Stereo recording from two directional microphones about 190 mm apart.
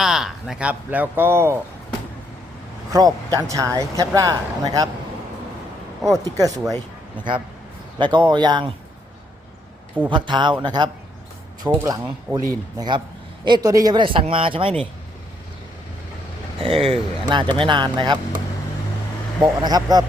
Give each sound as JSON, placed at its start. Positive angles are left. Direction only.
{"t": 0.0, "sound": "speech", "side_deg": 0}
{"t": 2.9, "sound": "speech", "side_deg": -20}
{"t": 6.1, "sound": "speech", "side_deg": -20}
{"t": 7.9, "sound": "speech", "side_deg": -25}
{"t": 10.1, "sound": "speech", "side_deg": -25}
{"t": 16.6, "sound": "speech", "side_deg": -30}
{"t": 19.4, "sound": "speech", "side_deg": -20}